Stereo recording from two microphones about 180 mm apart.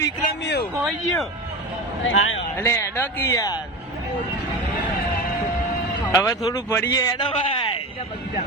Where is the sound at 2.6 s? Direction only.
15° left (ahead or behind).